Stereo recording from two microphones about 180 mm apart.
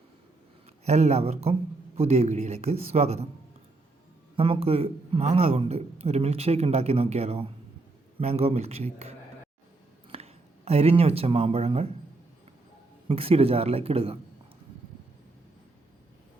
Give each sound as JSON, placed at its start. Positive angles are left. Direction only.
{"t": 0.9, "sound": "a man's voice", "side_deg": -40}
{"t": 4.4, "sound": "a man's voice", "side_deg": -30}
{"t": 13.1, "sound": "a man's voice", "side_deg": -30}